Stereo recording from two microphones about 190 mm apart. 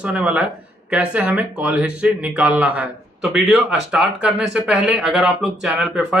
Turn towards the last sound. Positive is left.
turn(degrees=0)  # may be behind; listen again after turning